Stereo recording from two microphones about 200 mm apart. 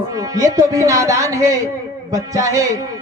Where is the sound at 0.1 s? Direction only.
15° right (ahead or behind).